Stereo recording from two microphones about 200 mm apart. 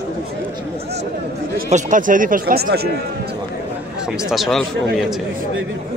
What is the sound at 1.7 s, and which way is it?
Speech, 40° right (ahead or behind).